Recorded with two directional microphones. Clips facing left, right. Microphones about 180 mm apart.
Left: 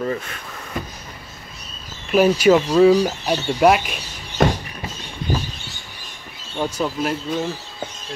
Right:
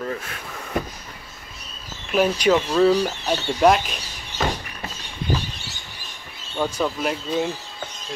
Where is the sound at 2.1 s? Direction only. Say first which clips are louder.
Left 5 dB; 5° left (ahead or behind).